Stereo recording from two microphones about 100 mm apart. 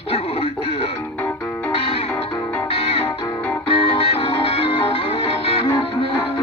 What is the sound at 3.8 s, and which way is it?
Music, 75° left (ahead or behind).